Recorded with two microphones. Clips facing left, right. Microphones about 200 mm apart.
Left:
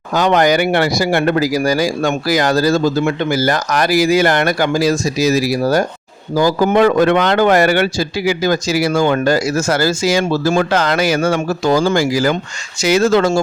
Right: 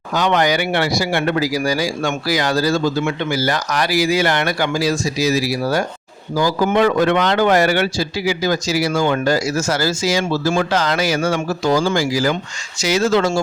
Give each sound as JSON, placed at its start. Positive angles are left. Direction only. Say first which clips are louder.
{"t": 0.1, "sound": "speech", "louder": "left 4 dB", "side_deg": 45}